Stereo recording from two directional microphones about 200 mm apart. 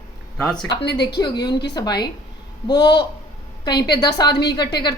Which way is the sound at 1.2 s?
20° left (ahead or behind).